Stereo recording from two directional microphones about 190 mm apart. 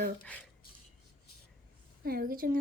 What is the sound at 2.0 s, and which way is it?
Speech, 50° right (ahead or behind).